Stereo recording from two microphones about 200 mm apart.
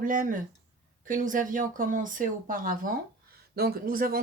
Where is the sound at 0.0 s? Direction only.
45° right (ahead or behind).